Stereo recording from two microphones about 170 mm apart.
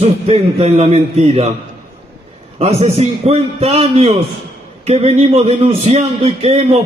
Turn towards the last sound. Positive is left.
turn(degrees=-35)  # may be behind; listen again after turning